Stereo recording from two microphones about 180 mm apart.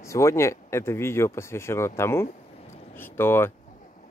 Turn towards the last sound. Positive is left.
turn(degrees=15)  # may be behind; listen again after turning